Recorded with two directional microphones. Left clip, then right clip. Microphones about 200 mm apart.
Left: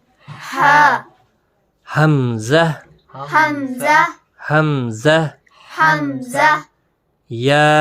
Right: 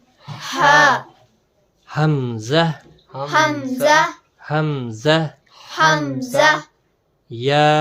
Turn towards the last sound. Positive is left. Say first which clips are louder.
# left 2 dB
turn(degrees=40)  # may be behind; listen again after turning